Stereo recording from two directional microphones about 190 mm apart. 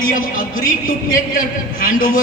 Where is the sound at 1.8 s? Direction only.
45° left (ahead or behind).